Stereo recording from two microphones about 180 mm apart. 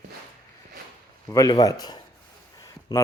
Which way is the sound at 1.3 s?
20° left (ahead or behind).